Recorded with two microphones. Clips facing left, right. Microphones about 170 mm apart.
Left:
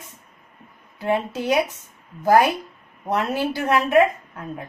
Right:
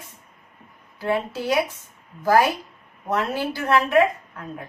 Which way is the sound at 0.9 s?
20° left (ahead or behind).